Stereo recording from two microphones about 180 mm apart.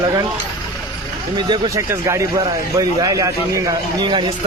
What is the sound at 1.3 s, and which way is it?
Speech, 25° right (ahead or behind).